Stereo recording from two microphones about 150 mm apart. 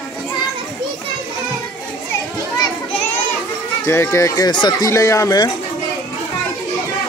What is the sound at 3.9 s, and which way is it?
Speech, 15° left (ahead or behind).